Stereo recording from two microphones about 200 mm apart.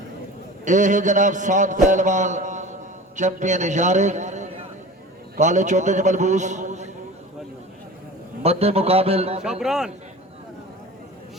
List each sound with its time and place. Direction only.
0.6 s a man's voice: 40° right (ahead or behind)
8.4 s a man's voice: 30° right (ahead or behind)
9.4 s a man's voice: 5° right (ahead or behind)